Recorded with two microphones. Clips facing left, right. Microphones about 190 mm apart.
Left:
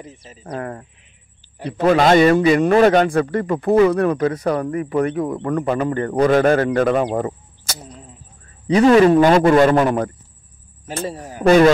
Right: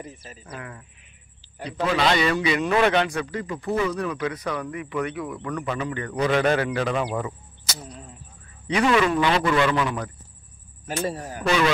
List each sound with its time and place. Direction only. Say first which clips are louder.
0.6 s a man's voice: left 15 dB; 50° left (ahead or behind)
4.2 s a man's voice: left 9 dB; 45° left (ahead or behind)
11.4 s a man's voice: left 11 dB; 45° left (ahead or behind)